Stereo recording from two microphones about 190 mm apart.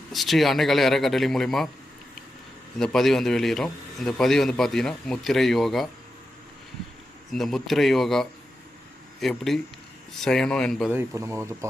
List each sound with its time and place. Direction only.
0.1 s speech: centre (ahead or behind)
2.7 s speech: centre (ahead or behind)
7.3 s speech: centre (ahead or behind)
10.9 s speech: 15° right (ahead or behind)